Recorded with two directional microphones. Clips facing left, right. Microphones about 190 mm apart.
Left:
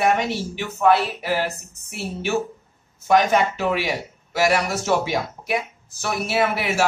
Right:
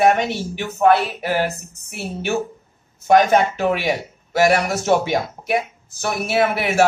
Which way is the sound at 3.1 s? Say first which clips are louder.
Right 3 dB; 50° right (ahead or behind).